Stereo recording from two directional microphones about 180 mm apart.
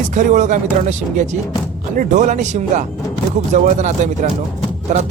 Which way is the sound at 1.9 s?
45° right (ahead or behind).